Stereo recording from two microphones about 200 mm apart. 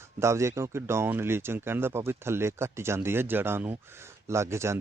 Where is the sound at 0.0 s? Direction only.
15° right (ahead or behind).